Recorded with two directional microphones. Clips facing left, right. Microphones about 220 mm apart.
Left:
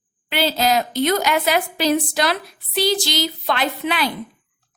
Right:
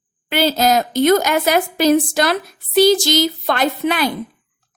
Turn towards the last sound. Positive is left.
turn(degrees=-45)  # may be behind; listen again after turning